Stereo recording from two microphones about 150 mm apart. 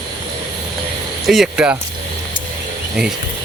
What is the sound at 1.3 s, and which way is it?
Speech, 5° right (ahead or behind).